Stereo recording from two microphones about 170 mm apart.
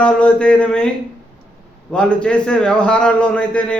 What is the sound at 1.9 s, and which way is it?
A man's voice, 5° left (ahead or behind).